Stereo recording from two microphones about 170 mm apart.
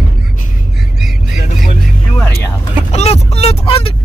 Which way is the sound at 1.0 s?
Centre (ahead or behind).